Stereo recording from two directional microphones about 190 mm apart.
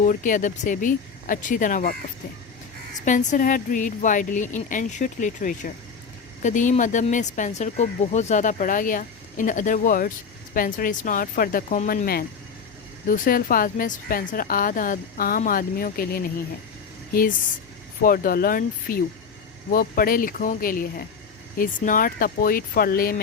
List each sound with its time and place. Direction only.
0.0 s a woman's voice: 45° left (ahead or behind)
3.0 s a woman's voice: 40° left (ahead or behind)
18.0 s a woman's voice: 50° left (ahead or behind)